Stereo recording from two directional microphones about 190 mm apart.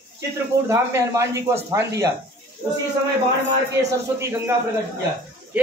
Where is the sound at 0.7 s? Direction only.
15° right (ahead or behind).